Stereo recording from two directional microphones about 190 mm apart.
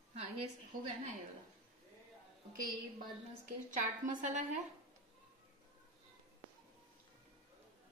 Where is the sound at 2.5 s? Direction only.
50° right (ahead or behind).